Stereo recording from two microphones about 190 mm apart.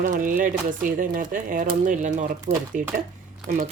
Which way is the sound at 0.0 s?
45° right (ahead or behind).